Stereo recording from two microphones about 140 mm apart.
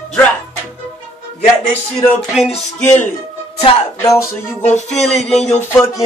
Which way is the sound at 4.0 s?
20° left (ahead or behind).